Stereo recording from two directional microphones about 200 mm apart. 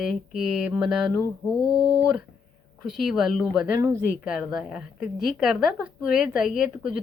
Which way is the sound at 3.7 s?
15° right (ahead or behind).